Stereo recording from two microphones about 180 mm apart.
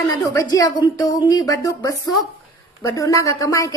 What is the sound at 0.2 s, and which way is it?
A woman's voice, 20° left (ahead or behind).